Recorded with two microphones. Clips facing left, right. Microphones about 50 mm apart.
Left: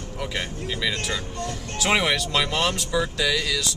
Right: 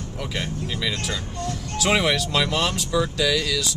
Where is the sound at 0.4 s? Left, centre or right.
Centre.